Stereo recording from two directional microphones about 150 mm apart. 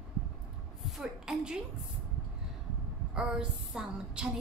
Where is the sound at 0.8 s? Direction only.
Centre (ahead or behind).